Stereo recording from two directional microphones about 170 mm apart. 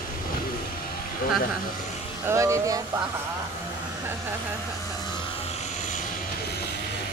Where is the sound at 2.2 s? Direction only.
15° right (ahead or behind).